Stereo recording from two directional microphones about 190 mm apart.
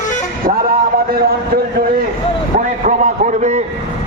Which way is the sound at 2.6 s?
40° right (ahead or behind).